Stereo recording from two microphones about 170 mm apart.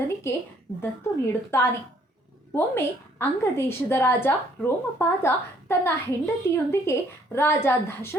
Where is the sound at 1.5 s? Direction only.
15° left (ahead or behind).